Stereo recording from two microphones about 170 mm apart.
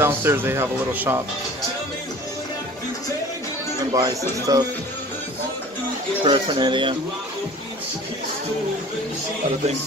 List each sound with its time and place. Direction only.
0.0 s speech: 15° right (ahead or behind)
3.9 s speech: 20° right (ahead or behind)
6.2 s speech: 30° right (ahead or behind)